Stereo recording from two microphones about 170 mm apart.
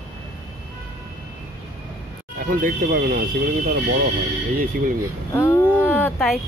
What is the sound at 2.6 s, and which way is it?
Speech, 55° right (ahead or behind).